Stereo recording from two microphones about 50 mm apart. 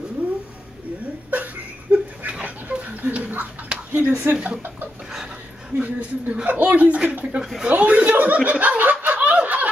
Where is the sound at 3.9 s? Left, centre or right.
Right.